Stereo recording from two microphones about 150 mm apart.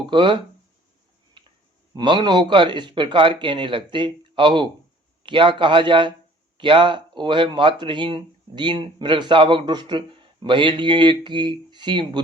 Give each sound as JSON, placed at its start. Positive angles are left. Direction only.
{"t": 0.0, "sound": "speech", "side_deg": -35}
{"t": 2.0, "sound": "speech", "side_deg": -30}